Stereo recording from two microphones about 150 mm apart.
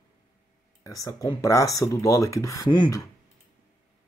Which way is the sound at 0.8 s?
20° left (ahead or behind).